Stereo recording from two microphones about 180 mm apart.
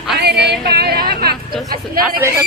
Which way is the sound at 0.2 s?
65° right (ahead or behind).